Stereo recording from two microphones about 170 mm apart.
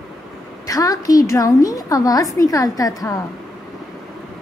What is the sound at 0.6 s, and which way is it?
A woman's voice, 20° left (ahead or behind).